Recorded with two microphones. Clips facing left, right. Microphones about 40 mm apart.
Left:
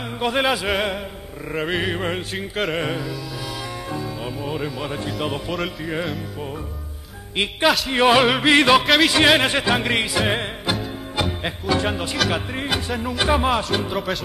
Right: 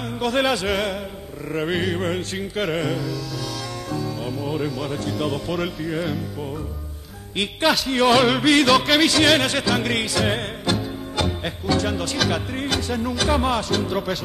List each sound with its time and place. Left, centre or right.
0.2 s speech: centre
2.3 s music: centre
2.8 s music: left
3.9 s speech: centre
7.6 s music: centre
7.9 s music: centre
8.8 s music: centre
9.1 s music: left
13.2 s speech: centre